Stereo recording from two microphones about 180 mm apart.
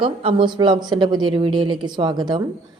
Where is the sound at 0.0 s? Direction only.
30° right (ahead or behind).